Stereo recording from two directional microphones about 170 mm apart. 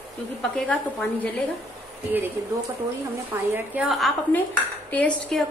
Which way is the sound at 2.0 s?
10° right (ahead or behind).